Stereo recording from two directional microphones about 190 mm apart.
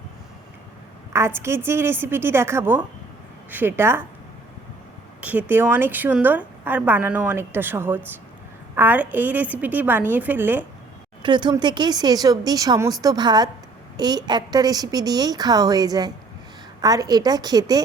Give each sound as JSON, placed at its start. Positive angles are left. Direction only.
{"t": 1.1, "sound": "a woman's voice", "side_deg": -15}
{"t": 5.2, "sound": "a woman's voice", "side_deg": -10}
{"t": 11.2, "sound": "a woman's voice", "side_deg": -25}